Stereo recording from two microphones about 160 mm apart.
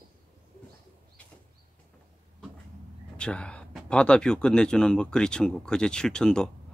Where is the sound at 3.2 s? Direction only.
5° left (ahead or behind).